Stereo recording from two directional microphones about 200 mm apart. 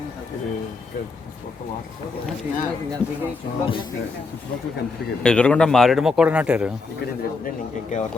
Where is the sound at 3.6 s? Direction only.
25° left (ahead or behind).